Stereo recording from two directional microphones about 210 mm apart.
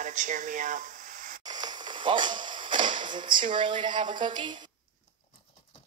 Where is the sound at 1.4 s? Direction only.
20° right (ahead or behind).